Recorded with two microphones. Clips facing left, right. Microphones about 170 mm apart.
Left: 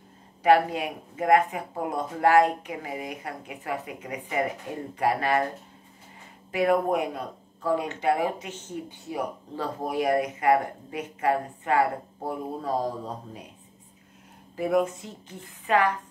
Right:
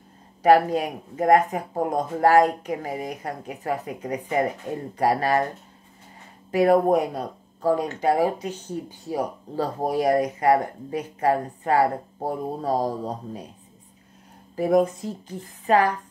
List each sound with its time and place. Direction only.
0.4 s speech: 40° right (ahead or behind)
6.5 s speech: 40° right (ahead or behind)
14.5 s speech: 35° right (ahead or behind)